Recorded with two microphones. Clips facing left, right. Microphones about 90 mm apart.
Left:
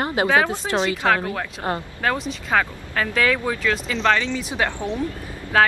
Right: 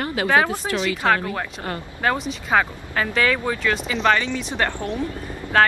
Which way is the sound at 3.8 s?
10° right (ahead or behind).